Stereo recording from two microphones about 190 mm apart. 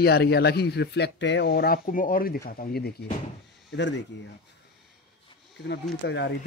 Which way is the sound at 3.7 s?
70° left (ahead or behind).